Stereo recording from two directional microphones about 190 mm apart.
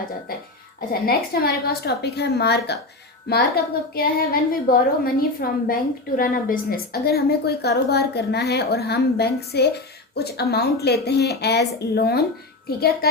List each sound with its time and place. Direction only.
1.0 s a woman's voice: 55° left (ahead or behind)